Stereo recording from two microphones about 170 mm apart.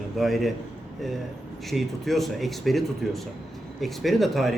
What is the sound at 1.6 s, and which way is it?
A man's voice, centre (ahead or behind).